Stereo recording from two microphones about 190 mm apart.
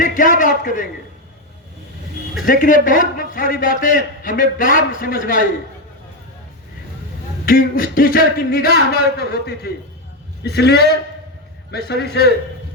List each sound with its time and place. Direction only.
0.0 s a man's voice: 45° left (ahead or behind)
2.5 s a man's voice: 45° left (ahead or behind)
7.4 s a man's voice: 50° left (ahead or behind)